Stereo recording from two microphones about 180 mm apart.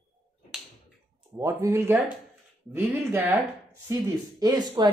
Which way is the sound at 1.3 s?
15° right (ahead or behind).